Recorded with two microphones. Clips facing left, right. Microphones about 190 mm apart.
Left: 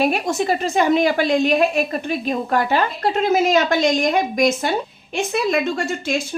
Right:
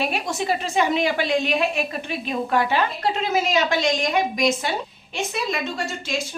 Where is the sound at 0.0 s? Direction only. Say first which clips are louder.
Left 6 dB; 45° left (ahead or behind).